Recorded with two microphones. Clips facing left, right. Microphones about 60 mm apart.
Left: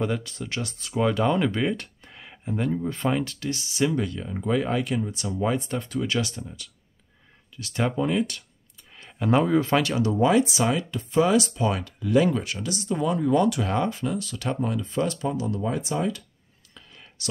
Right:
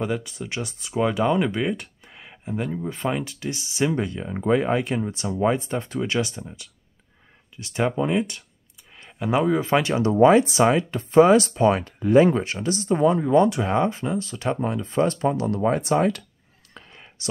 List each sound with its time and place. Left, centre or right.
0.0 s speech: centre
8.9 s a sound: centre
9.7 s speech: right
16.8 s whispering: right
17.2 s speech: right